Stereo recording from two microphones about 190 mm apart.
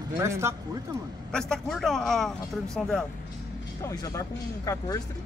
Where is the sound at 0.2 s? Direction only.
15° right (ahead or behind).